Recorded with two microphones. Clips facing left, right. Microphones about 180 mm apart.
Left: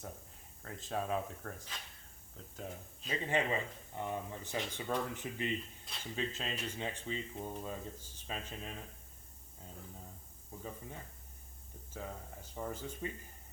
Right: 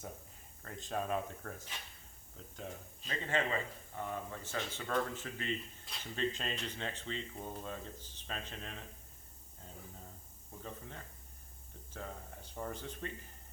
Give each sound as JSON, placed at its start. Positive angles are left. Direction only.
{"t": 0.6, "sound": "speech", "side_deg": 0}
{"t": 3.2, "sound": "speech", "side_deg": 15}
{"t": 5.9, "sound": "speech", "side_deg": 5}
{"t": 10.6, "sound": "speech", "side_deg": 10}
{"t": 12.5, "sound": "speech", "side_deg": 5}